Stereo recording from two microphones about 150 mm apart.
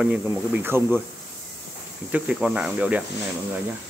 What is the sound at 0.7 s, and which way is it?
Speech, 15° right (ahead or behind).